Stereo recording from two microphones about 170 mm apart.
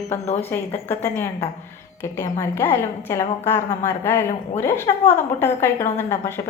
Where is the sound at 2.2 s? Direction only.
15° left (ahead or behind).